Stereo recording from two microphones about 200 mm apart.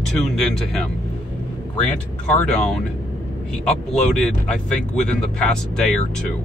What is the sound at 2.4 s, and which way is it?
Speech, 5° left (ahead or behind).